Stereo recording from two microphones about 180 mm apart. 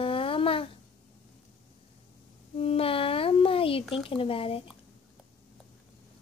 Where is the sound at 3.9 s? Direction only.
30° left (ahead or behind).